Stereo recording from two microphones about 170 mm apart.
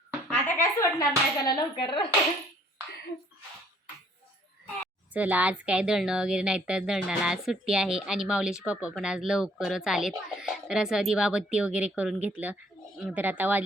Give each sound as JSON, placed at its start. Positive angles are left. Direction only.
{"t": 0.3, "sound": "speech", "side_deg": 10}
{"t": 1.5, "sound": "speech", "side_deg": 25}
{"t": 5.1, "sound": "a woman's voice", "side_deg": -10}